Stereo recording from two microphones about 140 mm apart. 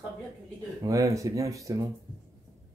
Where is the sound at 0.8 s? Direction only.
25° right (ahead or behind).